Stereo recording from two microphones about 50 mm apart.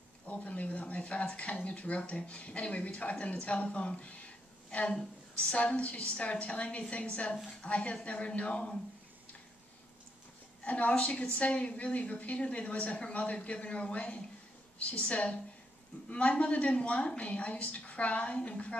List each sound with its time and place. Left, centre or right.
0.3 s speech: left
5.3 s speech: left
10.6 s speech: left